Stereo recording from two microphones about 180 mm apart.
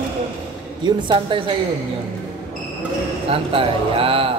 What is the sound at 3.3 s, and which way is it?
Speech, 30° right (ahead or behind).